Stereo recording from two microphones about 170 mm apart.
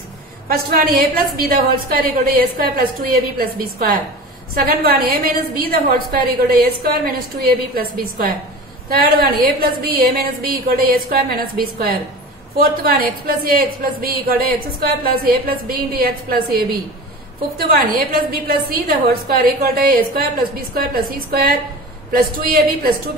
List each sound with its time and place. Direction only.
0.5 s a woman's voice: 60° right (ahead or behind)
15.4 s a woman's voice: 60° right (ahead or behind)
17.6 s a woman's voice: 60° right (ahead or behind)